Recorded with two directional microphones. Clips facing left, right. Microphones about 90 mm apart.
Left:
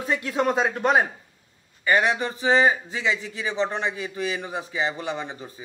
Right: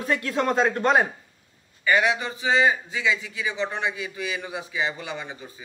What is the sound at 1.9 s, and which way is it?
A man's voice, 25° left (ahead or behind).